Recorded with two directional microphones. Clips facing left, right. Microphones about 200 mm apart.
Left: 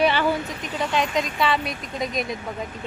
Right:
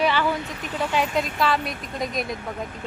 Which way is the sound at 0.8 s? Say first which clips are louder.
Even; 10° right (ahead or behind).